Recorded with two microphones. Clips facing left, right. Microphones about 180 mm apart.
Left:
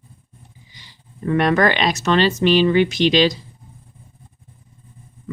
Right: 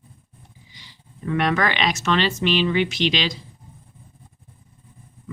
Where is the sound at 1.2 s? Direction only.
45° left (ahead or behind).